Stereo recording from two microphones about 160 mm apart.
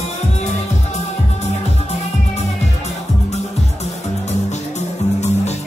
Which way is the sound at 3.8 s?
45° left (ahead or behind).